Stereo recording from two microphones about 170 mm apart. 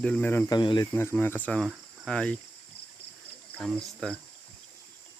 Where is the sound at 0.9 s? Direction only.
10° left (ahead or behind).